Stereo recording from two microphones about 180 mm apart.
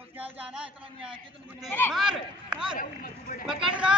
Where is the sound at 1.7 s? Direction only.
10° left (ahead or behind).